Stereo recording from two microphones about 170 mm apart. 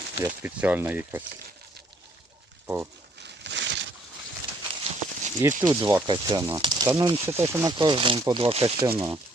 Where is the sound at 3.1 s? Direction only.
90° right.